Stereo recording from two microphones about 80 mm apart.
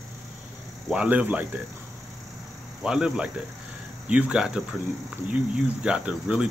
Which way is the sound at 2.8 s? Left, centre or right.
Centre.